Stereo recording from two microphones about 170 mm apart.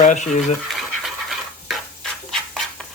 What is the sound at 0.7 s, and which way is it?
Stir, centre (ahead or behind).